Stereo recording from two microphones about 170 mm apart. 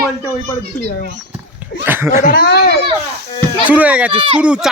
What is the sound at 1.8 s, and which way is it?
Speech, 15° right (ahead or behind).